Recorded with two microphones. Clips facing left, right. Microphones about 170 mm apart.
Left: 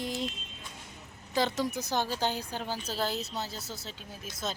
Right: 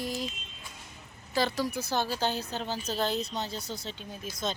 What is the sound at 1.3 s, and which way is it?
Speech, 20° left (ahead or behind).